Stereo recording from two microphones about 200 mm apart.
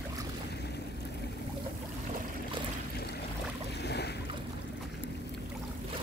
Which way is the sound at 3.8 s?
55° left (ahead or behind).